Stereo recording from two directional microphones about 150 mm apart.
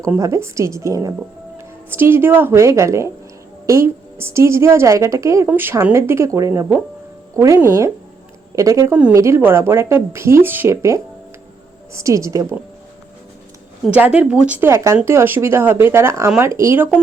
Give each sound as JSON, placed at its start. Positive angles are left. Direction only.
{"t": 0.2, "sound": "a woman's voice", "side_deg": -20}
{"t": 13.9, "sound": "a woman's voice", "side_deg": -10}